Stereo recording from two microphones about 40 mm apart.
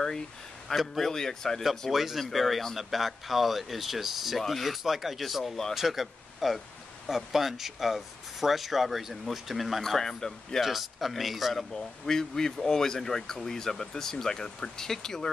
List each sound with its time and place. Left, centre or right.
0.7 s speech: centre
1.9 s speech: centre
5.8 s speech: centre
10.6 s speech: centre
11.7 s speech: centre